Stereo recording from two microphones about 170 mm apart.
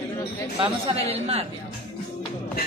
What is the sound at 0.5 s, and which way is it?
Speech, 35° right (ahead or behind).